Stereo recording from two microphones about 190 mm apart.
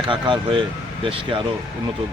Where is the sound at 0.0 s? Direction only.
25° right (ahead or behind).